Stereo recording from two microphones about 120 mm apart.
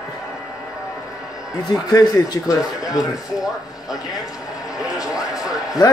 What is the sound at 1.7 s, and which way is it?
A man's voice, 30° left (ahead or behind).